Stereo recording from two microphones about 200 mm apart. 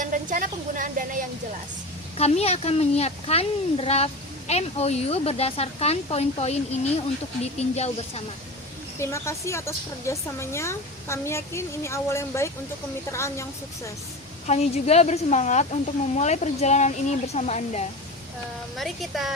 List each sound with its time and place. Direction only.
0.0 s a sound: 40° right (ahead or behind)
2.1 s speech: 30° left (ahead or behind)
9.0 s a woman's voice: 15° left (ahead or behind)
14.4 s speech: 35° left (ahead or behind)
18.8 s speech: centre (ahead or behind)